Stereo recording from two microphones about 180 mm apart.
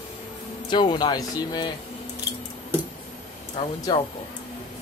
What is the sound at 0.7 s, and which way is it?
Speech, 25° left (ahead or behind).